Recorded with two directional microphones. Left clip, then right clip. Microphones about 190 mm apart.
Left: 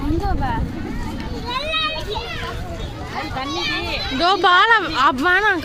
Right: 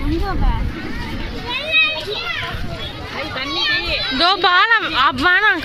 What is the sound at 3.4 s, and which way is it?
Speech, 65° left (ahead or behind).